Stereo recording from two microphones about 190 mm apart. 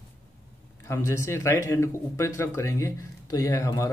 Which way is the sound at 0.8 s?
15° left (ahead or behind).